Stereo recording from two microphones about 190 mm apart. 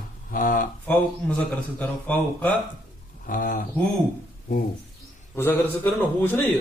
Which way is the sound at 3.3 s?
45° left (ahead or behind).